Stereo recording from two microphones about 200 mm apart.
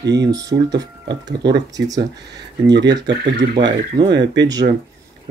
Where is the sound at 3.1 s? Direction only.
60° right (ahead or behind).